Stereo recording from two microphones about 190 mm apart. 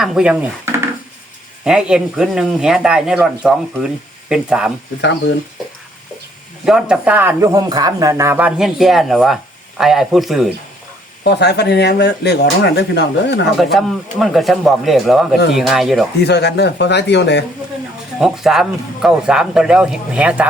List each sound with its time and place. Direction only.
0.0 s a man's voice: centre (ahead or behind)
6.7 s a man's voice: 5° right (ahead or behind)
11.2 s speech: 60° left (ahead or behind)
13.7 s a man's voice: centre (ahead or behind)
16.2 s speech: 60° left (ahead or behind)
18.2 s a man's voice: centre (ahead or behind)